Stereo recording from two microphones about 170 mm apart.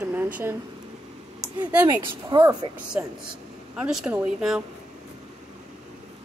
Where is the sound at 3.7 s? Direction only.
5° right (ahead or behind).